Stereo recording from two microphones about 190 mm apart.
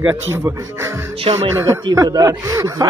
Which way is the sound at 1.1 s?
30° right (ahead or behind).